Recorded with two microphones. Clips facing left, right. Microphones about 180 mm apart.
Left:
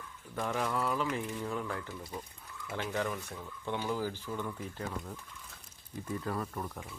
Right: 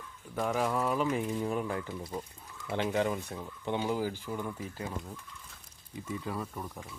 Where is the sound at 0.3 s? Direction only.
10° right (ahead or behind).